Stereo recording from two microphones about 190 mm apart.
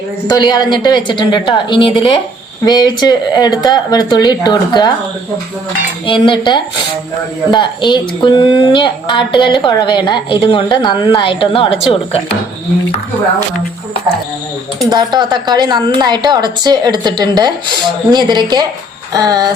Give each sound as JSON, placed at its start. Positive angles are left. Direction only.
{"t": 0.3, "sound": "a woman's voice", "side_deg": 20}
{"t": 6.1, "sound": "a woman's voice", "side_deg": 25}
{"t": 14.8, "sound": "a woman's voice", "side_deg": -20}